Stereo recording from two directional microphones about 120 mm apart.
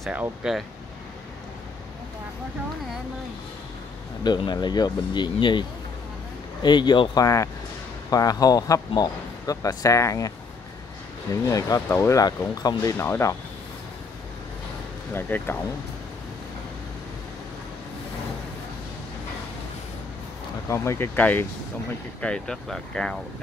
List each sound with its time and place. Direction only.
0.1 s speech: 10° right (ahead or behind)
4.2 s speech: 40° left (ahead or behind)
11.4 s speech: 25° left (ahead or behind)
12.9 s speech: 20° left (ahead or behind)
15.1 s speech: 15° left (ahead or behind)
20.6 s speech: 25° left (ahead or behind); by 23.1 s 5° left (ahead or behind)